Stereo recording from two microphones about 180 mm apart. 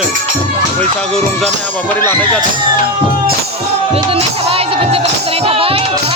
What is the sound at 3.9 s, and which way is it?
Music, 35° right (ahead or behind).